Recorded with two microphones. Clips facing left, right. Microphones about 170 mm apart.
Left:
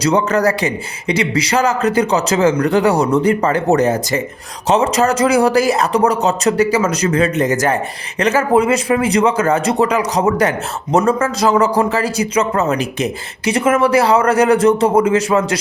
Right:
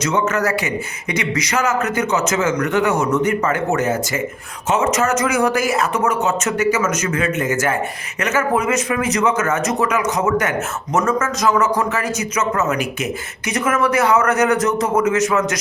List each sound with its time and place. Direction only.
0.0 s a man's voice: 35° left (ahead or behind)